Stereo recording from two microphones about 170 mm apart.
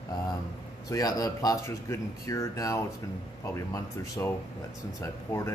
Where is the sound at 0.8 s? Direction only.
20° left (ahead or behind).